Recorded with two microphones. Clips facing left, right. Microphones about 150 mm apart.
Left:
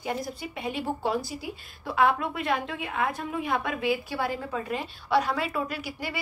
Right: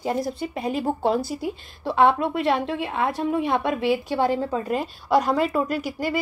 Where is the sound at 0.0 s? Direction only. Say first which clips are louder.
Right 7 dB; 35° right (ahead or behind).